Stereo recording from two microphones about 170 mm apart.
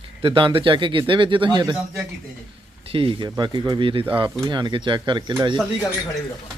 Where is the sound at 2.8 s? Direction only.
30° right (ahead or behind).